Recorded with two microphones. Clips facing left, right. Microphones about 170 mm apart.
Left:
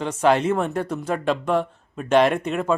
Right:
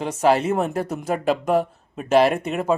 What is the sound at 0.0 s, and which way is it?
Speech, 10° right (ahead or behind).